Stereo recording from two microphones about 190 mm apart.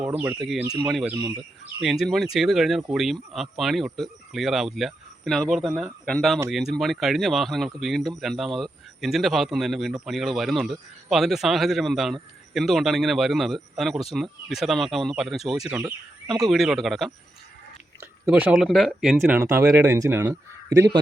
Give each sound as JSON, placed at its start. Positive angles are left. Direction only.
{"t": 0.0, "sound": "speech", "side_deg": -10}
{"t": 1.1, "sound": "speech", "side_deg": -20}
{"t": 1.8, "sound": "speech", "side_deg": 0}
{"t": 19.4, "sound": "speech", "side_deg": -15}